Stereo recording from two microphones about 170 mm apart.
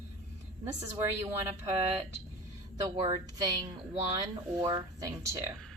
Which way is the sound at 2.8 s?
20° right (ahead or behind).